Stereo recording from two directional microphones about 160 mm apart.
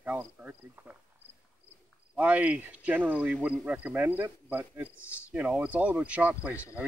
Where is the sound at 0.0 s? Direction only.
10° right (ahead or behind).